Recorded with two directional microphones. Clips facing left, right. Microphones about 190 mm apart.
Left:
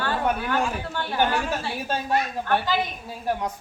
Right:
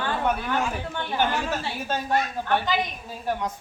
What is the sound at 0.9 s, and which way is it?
Speech, 15° right (ahead or behind).